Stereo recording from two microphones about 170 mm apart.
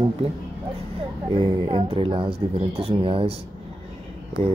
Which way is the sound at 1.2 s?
25° right (ahead or behind).